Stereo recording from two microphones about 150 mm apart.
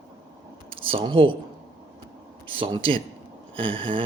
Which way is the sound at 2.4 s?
35° right (ahead or behind).